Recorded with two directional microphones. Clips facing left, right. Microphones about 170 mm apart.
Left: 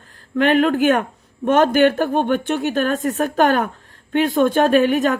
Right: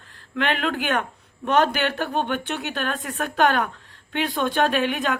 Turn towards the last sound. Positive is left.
turn(degrees=45)  # may be behind; listen again after turning